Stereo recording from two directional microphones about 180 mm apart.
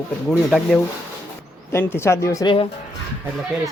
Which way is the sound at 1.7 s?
15° left (ahead or behind).